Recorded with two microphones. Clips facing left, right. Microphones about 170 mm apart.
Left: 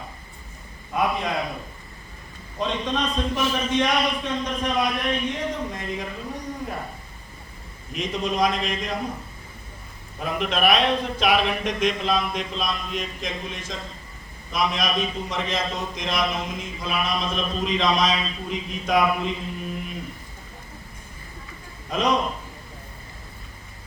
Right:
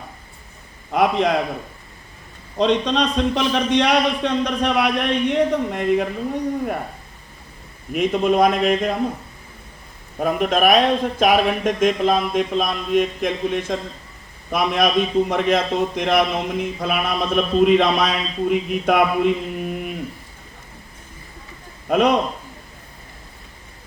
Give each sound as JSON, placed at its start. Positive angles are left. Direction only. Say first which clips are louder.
{"t": 0.9, "sound": "a man's voice", "louder": "right 7 dB", "side_deg": -75}
{"t": 2.6, "sound": "a man's voice", "louder": "right 8 dB", "side_deg": -75}
{"t": 7.9, "sound": "a man's voice", "louder": "right 8 dB", "side_deg": -55}
{"t": 10.2, "sound": "a man's voice", "louder": "right 6 dB", "side_deg": -45}
{"t": 21.8, "sound": "a man's voice", "louder": "right 6 dB", "side_deg": -60}